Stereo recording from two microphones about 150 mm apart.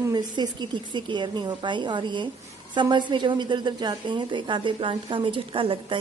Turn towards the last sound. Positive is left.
turn(degrees=-35)  # may be behind; listen again after turning